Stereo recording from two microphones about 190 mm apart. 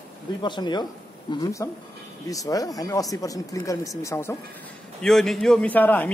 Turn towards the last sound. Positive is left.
turn(degrees=10)  # may be behind; listen again after turning